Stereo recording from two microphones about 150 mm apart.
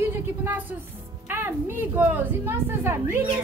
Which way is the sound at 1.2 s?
15° right (ahead or behind).